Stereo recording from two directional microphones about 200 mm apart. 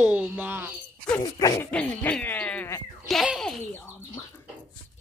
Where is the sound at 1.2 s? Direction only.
15° left (ahead or behind).